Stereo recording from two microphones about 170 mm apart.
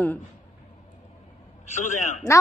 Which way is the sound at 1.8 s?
45° left (ahead or behind).